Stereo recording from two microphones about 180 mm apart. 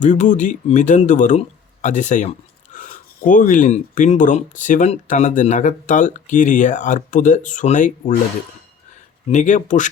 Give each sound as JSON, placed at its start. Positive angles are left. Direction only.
{"t": 0.0, "sound": "speech", "side_deg": 45}
{"t": 9.3, "sound": "speech", "side_deg": 45}